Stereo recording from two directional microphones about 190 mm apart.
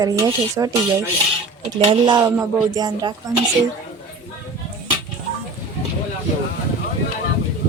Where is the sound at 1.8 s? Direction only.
25° right (ahead or behind).